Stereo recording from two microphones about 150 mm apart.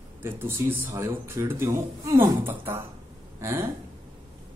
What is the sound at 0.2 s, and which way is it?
Speech, 15° right (ahead or behind).